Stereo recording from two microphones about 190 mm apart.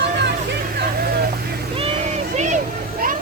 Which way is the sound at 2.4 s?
40° right (ahead or behind).